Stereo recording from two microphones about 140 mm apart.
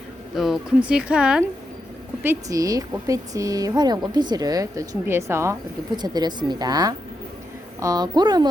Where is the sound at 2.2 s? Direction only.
20° right (ahead or behind).